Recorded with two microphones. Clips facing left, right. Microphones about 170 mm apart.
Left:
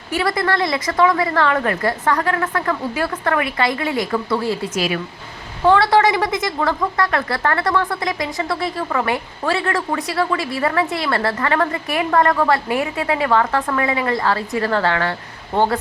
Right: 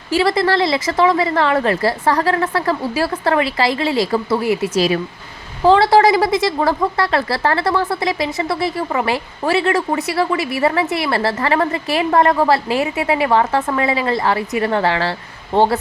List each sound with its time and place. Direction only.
0.1 s a woman's voice: 25° right (ahead or behind)